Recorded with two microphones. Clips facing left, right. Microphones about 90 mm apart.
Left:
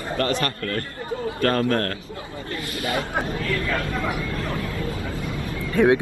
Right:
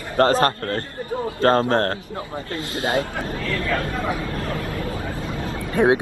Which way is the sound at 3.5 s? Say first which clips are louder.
Right 1 dB; 30° right (ahead or behind).